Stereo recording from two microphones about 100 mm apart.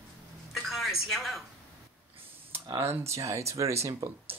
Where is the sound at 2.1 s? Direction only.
65° right (ahead or behind).